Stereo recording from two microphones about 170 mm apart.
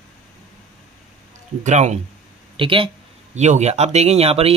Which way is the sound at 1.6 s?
40° right (ahead or behind).